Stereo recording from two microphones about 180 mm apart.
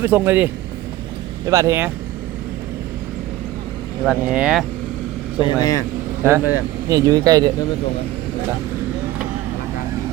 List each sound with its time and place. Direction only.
0.0 s speech: 10° right (ahead or behind)
4.4 s speech: 5° right (ahead or behind)
5.4 s speech: 25° left (ahead or behind)
6.2 s speech: 10° right (ahead or behind)